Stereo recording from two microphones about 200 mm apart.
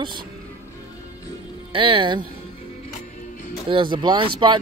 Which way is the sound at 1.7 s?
25° right (ahead or behind).